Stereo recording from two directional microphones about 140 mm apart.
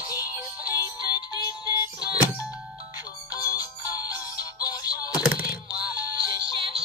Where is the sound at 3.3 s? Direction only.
25° left (ahead or behind).